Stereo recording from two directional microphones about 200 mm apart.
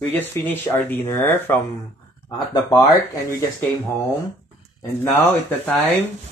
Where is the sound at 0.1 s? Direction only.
10° left (ahead or behind).